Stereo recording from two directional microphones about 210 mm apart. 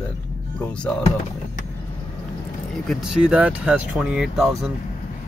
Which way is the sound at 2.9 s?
5° right (ahead or behind).